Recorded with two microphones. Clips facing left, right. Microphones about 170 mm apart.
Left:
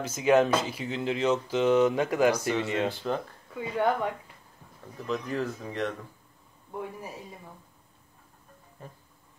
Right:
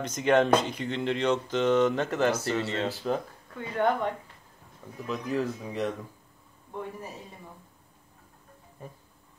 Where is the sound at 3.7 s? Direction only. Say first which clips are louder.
Even; 5° left (ahead or behind).